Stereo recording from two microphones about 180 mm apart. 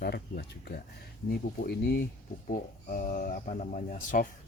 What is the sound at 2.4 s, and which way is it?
Speech, 50° left (ahead or behind).